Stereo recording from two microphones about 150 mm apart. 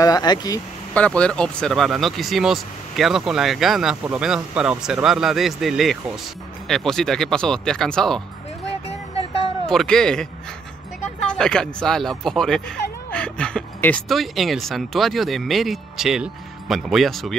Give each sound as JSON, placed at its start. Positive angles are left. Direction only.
{"t": 0.0, "sound": "speech", "side_deg": 25}
{"t": 0.9, "sound": "speech", "side_deg": 10}
{"t": 9.7, "sound": "speech", "side_deg": 5}
{"t": 11.2, "sound": "speech", "side_deg": 5}
{"t": 13.1, "sound": "a sound", "side_deg": 5}
{"t": 14.0, "sound": "speech", "side_deg": 0}